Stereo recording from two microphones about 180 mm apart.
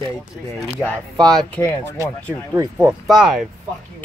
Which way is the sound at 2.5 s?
15° right (ahead or behind).